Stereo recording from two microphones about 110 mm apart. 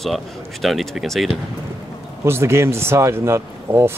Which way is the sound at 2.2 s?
25° right (ahead or behind).